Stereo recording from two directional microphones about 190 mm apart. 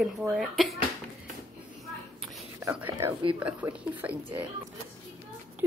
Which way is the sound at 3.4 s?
10° right (ahead or behind).